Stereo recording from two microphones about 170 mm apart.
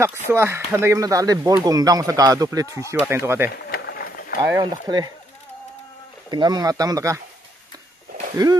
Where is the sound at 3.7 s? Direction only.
70° left (ahead or behind).